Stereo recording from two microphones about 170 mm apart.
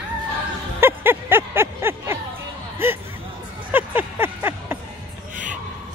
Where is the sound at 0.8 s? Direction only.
10° right (ahead or behind).